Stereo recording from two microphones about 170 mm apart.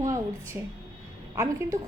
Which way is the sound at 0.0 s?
20° right (ahead or behind).